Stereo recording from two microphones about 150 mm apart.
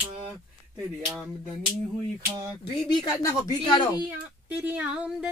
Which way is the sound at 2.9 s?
25° left (ahead or behind).